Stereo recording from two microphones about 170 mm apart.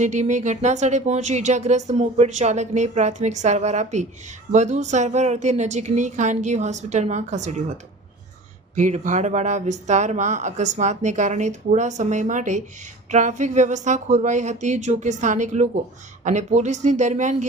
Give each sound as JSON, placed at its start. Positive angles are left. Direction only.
{"t": 0.0, "sound": "speech", "side_deg": -45}
{"t": 8.7, "sound": "speech", "side_deg": -45}